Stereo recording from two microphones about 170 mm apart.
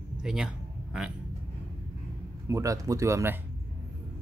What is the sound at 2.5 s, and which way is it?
Speech, 20° right (ahead or behind).